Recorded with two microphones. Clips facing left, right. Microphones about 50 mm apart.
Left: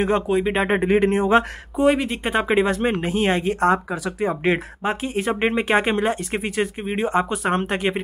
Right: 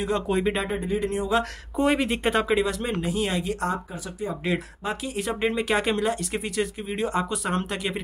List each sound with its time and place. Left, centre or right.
0.3 s speech: centre
0.7 s speech: left
1.8 s speech: centre
2.3 s speech: left
3.7 s speech: left
4.3 s speech: left